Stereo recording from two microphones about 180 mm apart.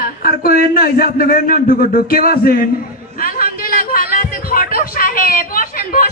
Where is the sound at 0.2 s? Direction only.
55° left (ahead or behind).